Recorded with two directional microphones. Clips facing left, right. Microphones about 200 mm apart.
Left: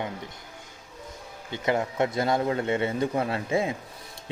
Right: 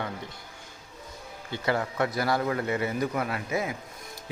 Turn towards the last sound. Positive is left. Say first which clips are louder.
# left 4 dB
turn(degrees=25)  # may be behind; listen again after turning